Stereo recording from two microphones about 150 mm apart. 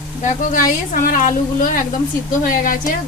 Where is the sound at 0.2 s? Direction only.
60° left (ahead or behind).